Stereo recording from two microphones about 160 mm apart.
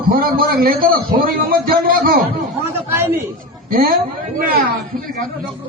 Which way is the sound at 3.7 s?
65° right (ahead or behind).